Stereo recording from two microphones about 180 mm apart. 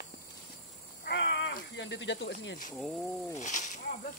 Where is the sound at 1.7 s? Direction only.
85° left.